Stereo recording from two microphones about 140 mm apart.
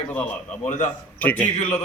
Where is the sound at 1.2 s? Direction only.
10° left (ahead or behind).